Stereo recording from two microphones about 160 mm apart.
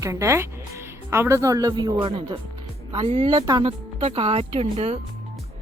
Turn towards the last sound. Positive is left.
turn(degrees=-40)  # may be behind; listen again after turning